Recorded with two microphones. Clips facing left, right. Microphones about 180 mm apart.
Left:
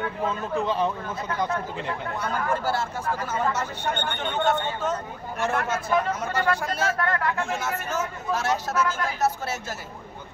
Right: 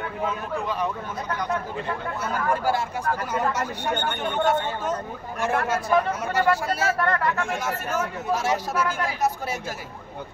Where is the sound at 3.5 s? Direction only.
10° right (ahead or behind).